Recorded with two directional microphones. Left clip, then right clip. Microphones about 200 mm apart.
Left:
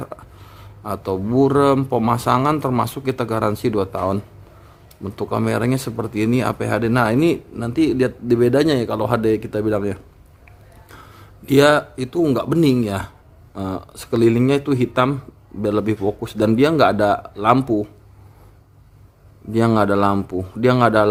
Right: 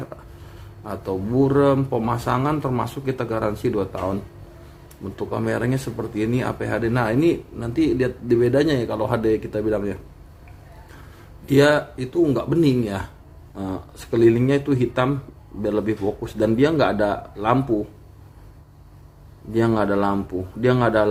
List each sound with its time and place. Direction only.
0.9 s speech: 45° left (ahead or behind)
11.4 s speech: 40° left (ahead or behind)
19.5 s speech: 40° left (ahead or behind)